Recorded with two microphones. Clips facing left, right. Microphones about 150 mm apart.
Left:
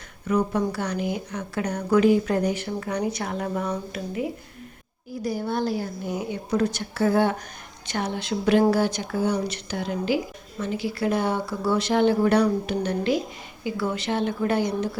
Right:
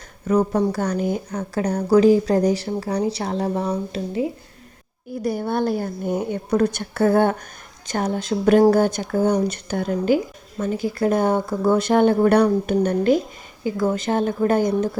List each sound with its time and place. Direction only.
0.3 s speech: 40° right (ahead or behind)
5.2 s speech: 55° right (ahead or behind)